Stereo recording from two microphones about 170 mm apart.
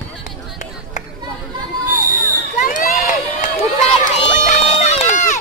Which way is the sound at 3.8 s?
35° left (ahead or behind).